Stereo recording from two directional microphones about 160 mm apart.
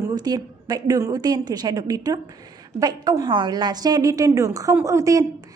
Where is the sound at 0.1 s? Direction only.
25° right (ahead or behind).